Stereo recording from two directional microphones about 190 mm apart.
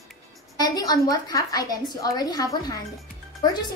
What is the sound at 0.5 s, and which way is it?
A woman's voice, 20° left (ahead or behind).